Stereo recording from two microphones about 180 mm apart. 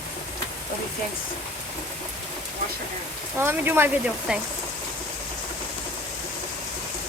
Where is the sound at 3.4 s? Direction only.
10° right (ahead or behind).